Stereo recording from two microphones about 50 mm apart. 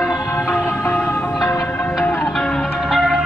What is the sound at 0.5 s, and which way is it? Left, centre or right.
Music, left.